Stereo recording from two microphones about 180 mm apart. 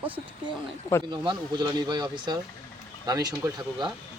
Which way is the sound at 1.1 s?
25° right (ahead or behind).